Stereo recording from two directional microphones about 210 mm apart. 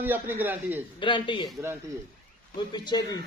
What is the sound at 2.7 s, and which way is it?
Speech, 20° left (ahead or behind).